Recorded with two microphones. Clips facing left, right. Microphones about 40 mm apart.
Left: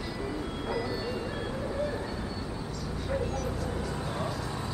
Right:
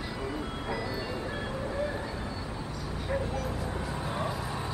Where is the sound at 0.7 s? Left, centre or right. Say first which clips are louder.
Left 2 dB; centre.